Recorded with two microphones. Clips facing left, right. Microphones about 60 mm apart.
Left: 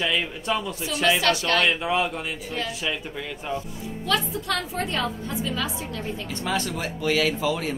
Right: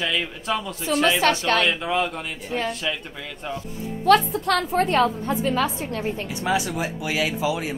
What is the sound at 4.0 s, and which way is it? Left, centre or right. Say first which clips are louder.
A woman's voice: right 9 dB; right.